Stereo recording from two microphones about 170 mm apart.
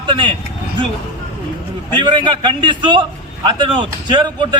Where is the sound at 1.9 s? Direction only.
25° right (ahead or behind).